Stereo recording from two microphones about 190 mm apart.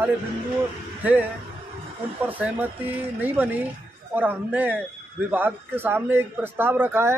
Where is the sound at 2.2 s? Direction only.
10° right (ahead or behind).